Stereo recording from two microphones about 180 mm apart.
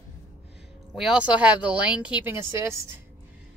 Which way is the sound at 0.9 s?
5° right (ahead or behind).